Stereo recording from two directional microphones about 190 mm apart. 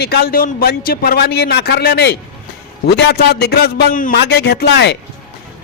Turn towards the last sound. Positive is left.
turn(degrees=60)  # may be behind; listen again after turning